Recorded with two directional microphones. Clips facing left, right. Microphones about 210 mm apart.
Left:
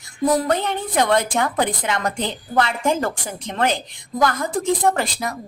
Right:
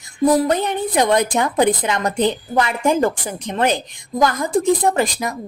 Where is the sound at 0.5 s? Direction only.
15° right (ahead or behind).